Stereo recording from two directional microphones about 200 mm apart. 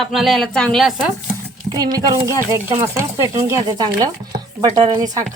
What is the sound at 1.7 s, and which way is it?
A woman's voice, 20° right (ahead or behind).